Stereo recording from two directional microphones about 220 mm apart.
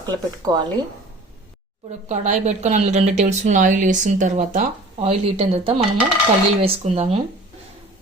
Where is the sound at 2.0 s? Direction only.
30° right (ahead or behind).